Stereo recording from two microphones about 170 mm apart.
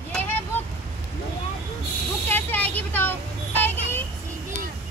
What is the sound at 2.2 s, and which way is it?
Vehicle, 10° left (ahead or behind).